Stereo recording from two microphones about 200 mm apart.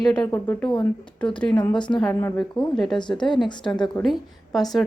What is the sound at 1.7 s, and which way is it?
Speech, 20° left (ahead or behind).